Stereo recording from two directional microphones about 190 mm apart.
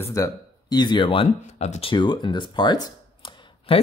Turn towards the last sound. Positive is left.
turn(degrees=25)  # may be behind; listen again after turning